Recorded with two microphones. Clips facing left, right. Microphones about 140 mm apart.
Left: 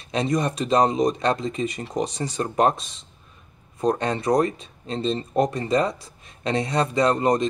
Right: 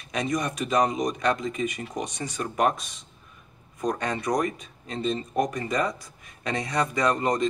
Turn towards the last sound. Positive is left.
turn(degrees=20)  # may be behind; listen again after turning